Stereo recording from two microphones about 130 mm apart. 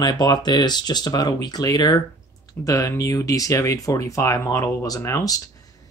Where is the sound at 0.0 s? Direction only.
35° left (ahead or behind).